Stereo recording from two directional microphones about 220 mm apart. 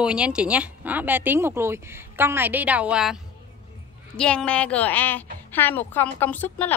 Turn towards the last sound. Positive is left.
turn(degrees=5)  # may be behind; listen again after turning